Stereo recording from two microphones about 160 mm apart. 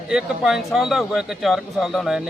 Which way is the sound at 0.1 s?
5° right (ahead or behind).